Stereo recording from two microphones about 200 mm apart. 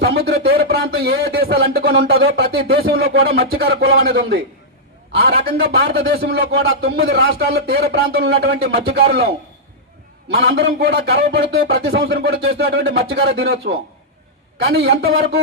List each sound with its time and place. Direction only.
0.0 s speech: 50° right (ahead or behind)
10.3 s speech: 55° right (ahead or behind)